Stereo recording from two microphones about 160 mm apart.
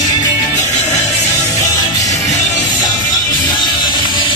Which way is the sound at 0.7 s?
45° left (ahead or behind).